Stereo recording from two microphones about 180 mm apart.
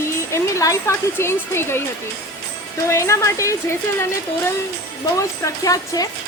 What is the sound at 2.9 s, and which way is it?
Speech, 15° left (ahead or behind).